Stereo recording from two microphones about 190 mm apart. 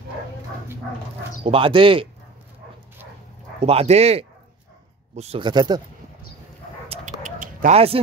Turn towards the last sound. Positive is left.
turn(degrees=-45)  # may be behind; listen again after turning